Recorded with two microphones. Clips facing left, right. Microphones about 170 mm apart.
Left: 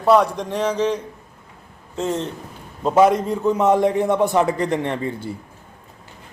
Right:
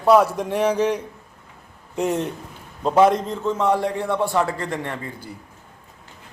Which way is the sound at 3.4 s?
15° left (ahead or behind).